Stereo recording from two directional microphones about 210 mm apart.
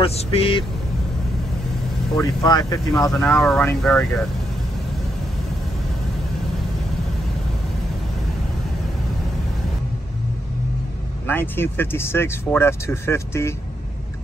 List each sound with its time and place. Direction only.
0.0 s speech: 25° left (ahead or behind)
2.4 s speech: 15° left (ahead or behind)
3.1 s speech: 5° left (ahead or behind)
11.2 s speech: 10° left (ahead or behind)